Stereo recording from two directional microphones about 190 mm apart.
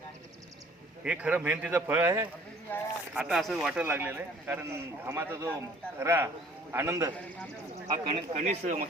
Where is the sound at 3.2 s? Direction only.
Centre (ahead or behind).